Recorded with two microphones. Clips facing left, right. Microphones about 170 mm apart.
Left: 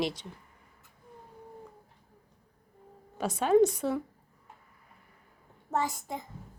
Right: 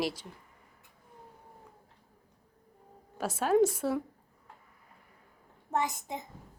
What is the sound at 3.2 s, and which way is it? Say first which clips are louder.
Speech: left 2 dB; 5° right (ahead or behind).